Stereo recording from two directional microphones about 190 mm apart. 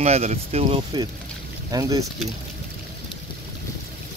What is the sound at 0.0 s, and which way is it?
Speech, 35° right (ahead or behind).